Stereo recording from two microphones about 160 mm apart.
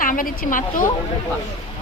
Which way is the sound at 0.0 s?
60° left (ahead or behind).